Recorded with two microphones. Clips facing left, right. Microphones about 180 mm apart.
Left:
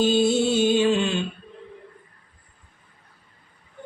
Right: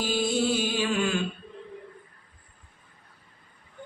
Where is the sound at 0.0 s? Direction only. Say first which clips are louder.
Left 7 dB; 25° left (ahead or behind).